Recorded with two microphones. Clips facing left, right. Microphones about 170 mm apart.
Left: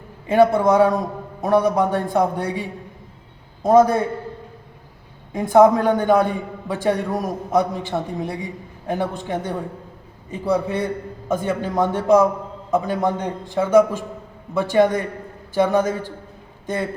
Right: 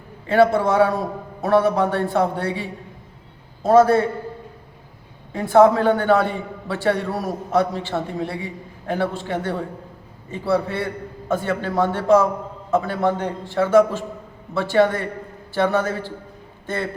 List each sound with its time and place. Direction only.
0.3 s a man's voice: 15° left (ahead or behind)
5.3 s a man's voice: 15° left (ahead or behind)